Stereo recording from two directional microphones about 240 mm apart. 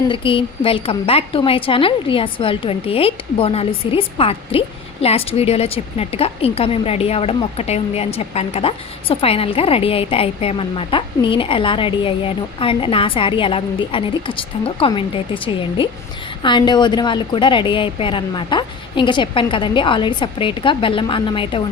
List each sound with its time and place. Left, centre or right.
0.1 s a woman's voice: left